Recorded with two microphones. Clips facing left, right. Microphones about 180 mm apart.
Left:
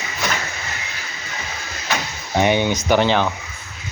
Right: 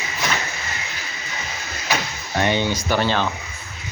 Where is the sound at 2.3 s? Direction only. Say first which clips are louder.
Left 3 dB; 15° left (ahead or behind).